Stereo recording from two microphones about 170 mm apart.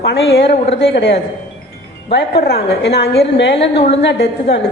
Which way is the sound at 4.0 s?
90° left.